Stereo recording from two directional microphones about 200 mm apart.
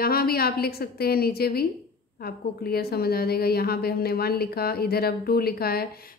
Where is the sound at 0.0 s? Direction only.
50° left (ahead or behind).